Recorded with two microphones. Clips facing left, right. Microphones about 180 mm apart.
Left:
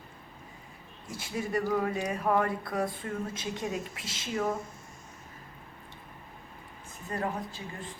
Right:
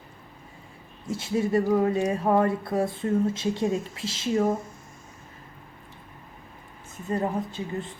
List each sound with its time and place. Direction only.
1.0 s speech: 25° right (ahead or behind)
7.1 s speech: 25° right (ahead or behind)